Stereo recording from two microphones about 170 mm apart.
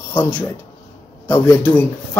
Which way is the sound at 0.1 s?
10° left (ahead or behind).